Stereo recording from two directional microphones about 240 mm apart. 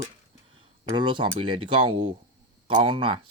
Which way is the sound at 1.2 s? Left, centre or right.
Right.